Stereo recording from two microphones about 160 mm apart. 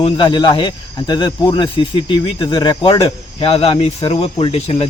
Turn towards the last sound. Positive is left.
turn(degrees=35)  # may be behind; listen again after turning